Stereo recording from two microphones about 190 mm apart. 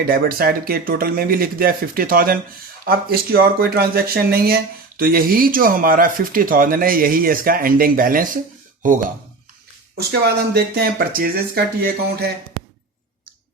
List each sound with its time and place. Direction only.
0.0 s speech: 50° right (ahead or behind)
10.1 s speech: 55° right (ahead or behind)